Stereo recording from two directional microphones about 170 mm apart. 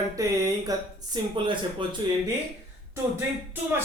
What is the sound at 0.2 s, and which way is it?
Speech, 20° right (ahead or behind).